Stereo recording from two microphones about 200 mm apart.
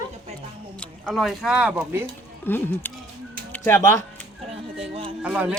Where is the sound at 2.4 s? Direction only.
10° left (ahead or behind).